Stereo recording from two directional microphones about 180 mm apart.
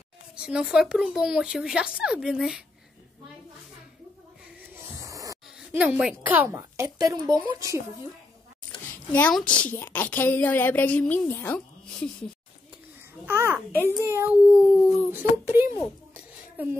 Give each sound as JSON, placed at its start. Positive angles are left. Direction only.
{"t": 0.4, "sound": "speech", "side_deg": -5}
{"t": 5.0, "sound": "a sound", "side_deg": -20}
{"t": 5.8, "sound": "a woman's voice", "side_deg": -5}
{"t": 9.1, "sound": "a woman's voice", "side_deg": 5}
{"t": 13.2, "sound": "a woman's voice", "side_deg": -10}
{"t": 13.7, "sound": "a woman's voice", "side_deg": 10}
{"t": 14.0, "sound": "a woman's voice", "side_deg": -15}
{"t": 14.4, "sound": "speech", "side_deg": 5}
{"t": 15.0, "sound": "speech", "side_deg": -10}